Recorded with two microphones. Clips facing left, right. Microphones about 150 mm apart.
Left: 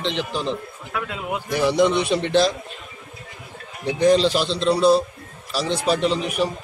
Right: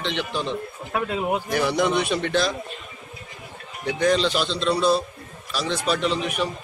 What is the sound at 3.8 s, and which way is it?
A man's voice, 30° left (ahead or behind).